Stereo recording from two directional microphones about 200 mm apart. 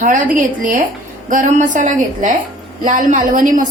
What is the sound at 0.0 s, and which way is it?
A woman's voice, 40° right (ahead or behind).